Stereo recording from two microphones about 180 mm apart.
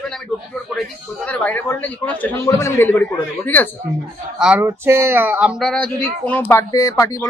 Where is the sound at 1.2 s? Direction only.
5° left (ahead or behind).